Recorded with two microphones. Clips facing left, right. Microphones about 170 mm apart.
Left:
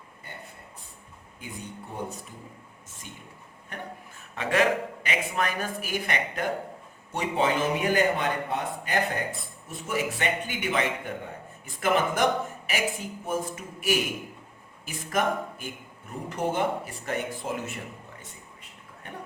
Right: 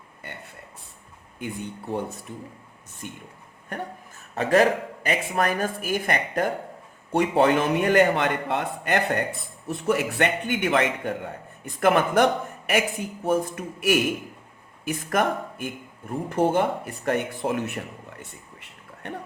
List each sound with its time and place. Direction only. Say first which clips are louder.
1.9 s speech: right 7 dB; 80° right
3.0 s speech: right 8 dB; 60° right (ahead or behind)
4.4 s speech: right 5 dB; 40° right (ahead or behind)
7.1 s speech: right 6 dB; 60° right (ahead or behind)